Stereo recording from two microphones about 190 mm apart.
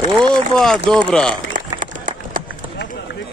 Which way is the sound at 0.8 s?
5° left (ahead or behind).